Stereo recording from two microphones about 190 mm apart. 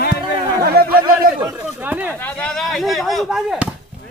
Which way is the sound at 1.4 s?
10° right (ahead or behind).